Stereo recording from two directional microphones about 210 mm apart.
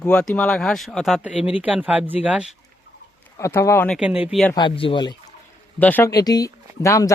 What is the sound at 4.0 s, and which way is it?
Speech, 5° right (ahead or behind).